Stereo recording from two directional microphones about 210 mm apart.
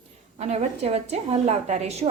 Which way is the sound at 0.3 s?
30° right (ahead or behind).